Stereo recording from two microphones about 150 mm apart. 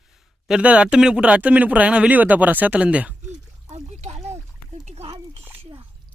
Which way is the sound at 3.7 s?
45° right (ahead or behind).